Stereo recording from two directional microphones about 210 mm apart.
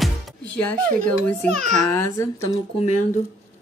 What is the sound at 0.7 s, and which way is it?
Speech, 5° left (ahead or behind).